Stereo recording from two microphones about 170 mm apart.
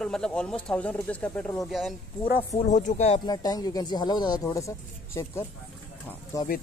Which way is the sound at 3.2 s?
25° left (ahead or behind).